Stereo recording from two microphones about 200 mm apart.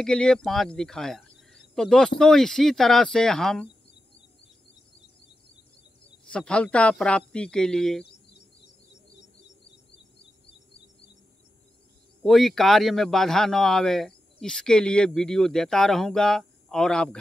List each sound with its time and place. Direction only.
0.0 s a man's voice: 5° left (ahead or behind)
6.2 s a man's voice: 5° left (ahead or behind)
12.2 s a man's voice: centre (ahead or behind)